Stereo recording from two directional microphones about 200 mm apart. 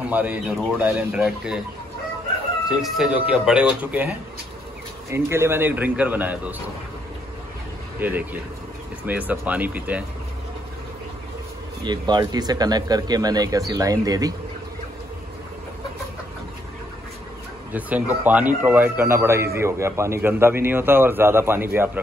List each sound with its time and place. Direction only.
0.1 s speech: 5° right (ahead or behind)
2.7 s speech: 5° right (ahead or behind)
5.1 s a man's voice: 15° right (ahead or behind)
8.0 s a man's voice: 10° right (ahead or behind)
11.8 s speech: 20° right (ahead or behind)
17.7 s a man's voice: 10° right (ahead or behind)